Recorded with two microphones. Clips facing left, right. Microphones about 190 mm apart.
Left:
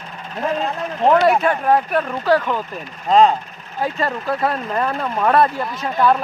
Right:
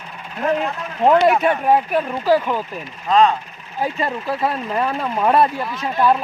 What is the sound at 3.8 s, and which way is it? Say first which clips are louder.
Speech: even; 10° right (ahead or behind).